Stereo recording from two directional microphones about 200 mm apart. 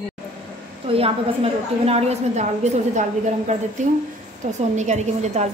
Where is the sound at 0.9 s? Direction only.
30° right (ahead or behind).